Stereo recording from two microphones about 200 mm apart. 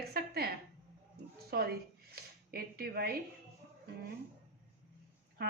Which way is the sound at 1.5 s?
55° right (ahead or behind).